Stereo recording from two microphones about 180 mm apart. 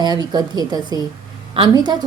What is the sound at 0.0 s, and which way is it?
A woman's voice, 20° right (ahead or behind).